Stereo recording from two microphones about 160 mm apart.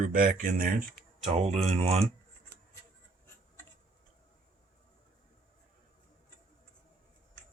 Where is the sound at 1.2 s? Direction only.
40° right (ahead or behind).